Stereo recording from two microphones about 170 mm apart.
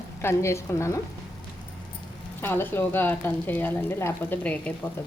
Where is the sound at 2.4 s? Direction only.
15° left (ahead or behind).